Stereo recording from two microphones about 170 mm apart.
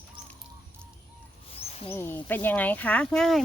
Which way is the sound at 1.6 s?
35° left (ahead or behind).